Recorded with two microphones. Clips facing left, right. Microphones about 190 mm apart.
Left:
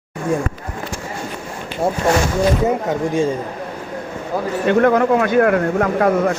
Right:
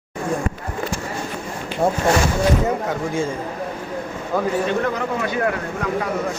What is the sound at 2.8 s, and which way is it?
Speech, 20° left (ahead or behind).